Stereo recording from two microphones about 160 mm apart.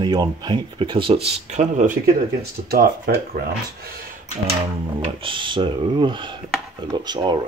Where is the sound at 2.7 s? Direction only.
70° right (ahead or behind).